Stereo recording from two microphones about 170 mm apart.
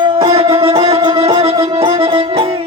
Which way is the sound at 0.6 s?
35° right (ahead or behind).